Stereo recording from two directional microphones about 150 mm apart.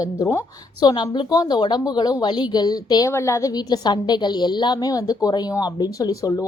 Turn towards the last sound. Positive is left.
turn(degrees=20)  # may be behind; listen again after turning